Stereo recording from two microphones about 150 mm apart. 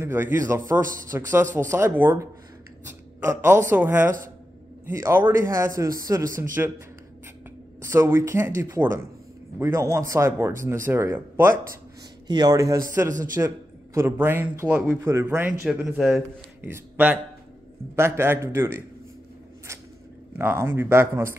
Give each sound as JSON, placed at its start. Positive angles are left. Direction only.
{"t": 0.0, "sound": "a man's voice", "side_deg": -15}
{"t": 7.8, "sound": "a man's voice", "side_deg": -20}
{"t": 12.3, "sound": "a man's voice", "side_deg": -30}
{"t": 16.6, "sound": "speech", "side_deg": -15}
{"t": 20.3, "sound": "speech", "side_deg": -15}